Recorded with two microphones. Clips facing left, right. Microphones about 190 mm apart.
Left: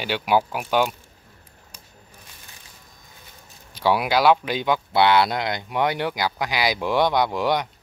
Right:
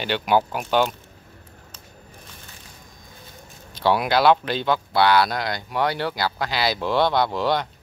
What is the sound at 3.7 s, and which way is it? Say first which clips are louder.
Speech: even; 10° left (ahead or behind).